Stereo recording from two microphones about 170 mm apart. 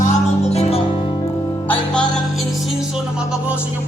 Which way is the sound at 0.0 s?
40° left (ahead or behind).